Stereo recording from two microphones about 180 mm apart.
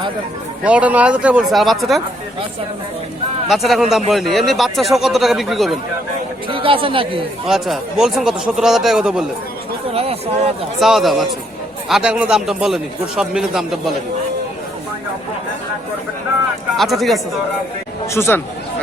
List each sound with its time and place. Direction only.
0.6 s speech: 5° right (ahead or behind)
3.5 s a man's voice: centre (ahead or behind)
6.5 s speech: 30° right (ahead or behind)
7.4 s a man's voice: centre (ahead or behind)
9.9 s speech: 35° right (ahead or behind)
10.8 s a man's voice: centre (ahead or behind)
16.7 s a man's voice: centre (ahead or behind)
18.0 s speech: 15° left (ahead or behind)